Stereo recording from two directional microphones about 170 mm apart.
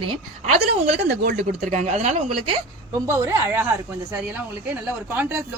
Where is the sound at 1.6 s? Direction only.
45° right (ahead or behind).